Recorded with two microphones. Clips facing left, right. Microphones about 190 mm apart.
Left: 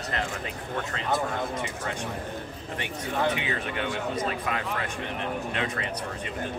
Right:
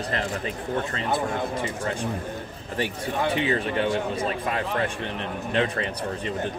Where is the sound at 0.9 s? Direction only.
35° right (ahead or behind).